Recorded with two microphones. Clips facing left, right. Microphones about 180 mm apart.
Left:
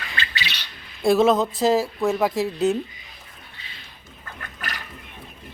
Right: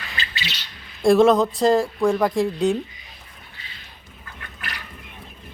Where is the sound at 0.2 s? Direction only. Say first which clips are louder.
Left 2 dB; 60° left (ahead or behind).